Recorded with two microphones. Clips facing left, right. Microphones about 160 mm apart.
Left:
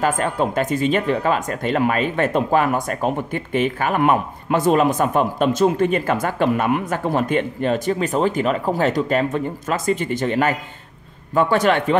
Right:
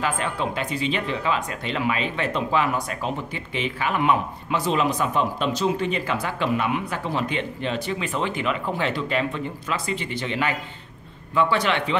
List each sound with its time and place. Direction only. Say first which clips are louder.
0.0 s speech: left 6 dB; 45° left (ahead or behind)